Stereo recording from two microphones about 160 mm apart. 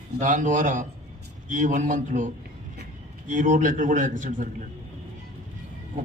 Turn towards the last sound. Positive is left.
turn(degrees=-55)  # may be behind; listen again after turning